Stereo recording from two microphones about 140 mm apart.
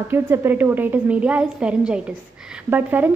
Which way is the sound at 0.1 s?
15° right (ahead or behind).